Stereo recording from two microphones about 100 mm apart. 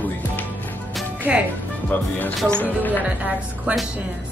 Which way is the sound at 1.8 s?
15° left (ahead or behind).